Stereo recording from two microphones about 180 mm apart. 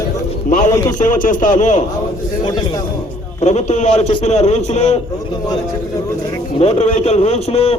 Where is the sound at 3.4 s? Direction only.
40° left (ahead or behind).